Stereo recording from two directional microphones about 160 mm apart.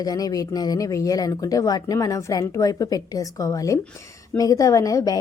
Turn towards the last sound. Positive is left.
turn(degrees=20)  # may be behind; listen again after turning